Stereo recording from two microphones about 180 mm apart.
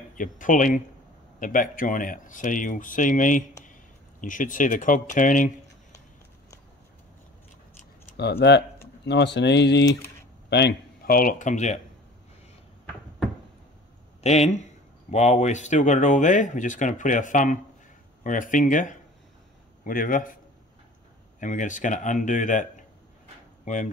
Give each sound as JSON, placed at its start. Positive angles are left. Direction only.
{"t": 0.1, "sound": "speech", "side_deg": 45}
{"t": 8.1, "sound": "speech", "side_deg": 60}
{"t": 10.5, "sound": "speech", "side_deg": 60}
{"t": 14.2, "sound": "speech", "side_deg": 40}
{"t": 21.4, "sound": "speech", "side_deg": 45}